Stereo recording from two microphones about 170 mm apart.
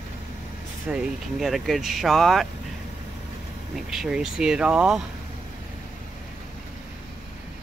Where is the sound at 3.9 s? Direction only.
5° right (ahead or behind).